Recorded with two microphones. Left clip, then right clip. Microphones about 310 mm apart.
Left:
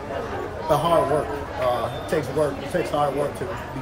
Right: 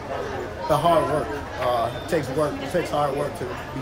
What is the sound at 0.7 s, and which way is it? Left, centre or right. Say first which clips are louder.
Speech: left 1 dB; centre.